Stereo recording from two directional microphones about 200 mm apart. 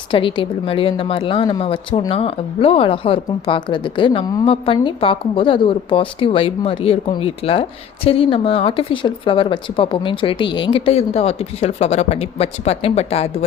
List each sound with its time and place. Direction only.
0.1 s a woman's voice: 25° left (ahead or behind)